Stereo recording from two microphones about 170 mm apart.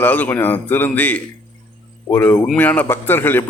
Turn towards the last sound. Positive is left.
turn(degrees=10)  # may be behind; listen again after turning